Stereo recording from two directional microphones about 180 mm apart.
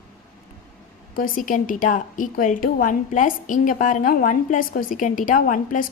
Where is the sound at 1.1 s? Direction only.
50° left (ahead or behind).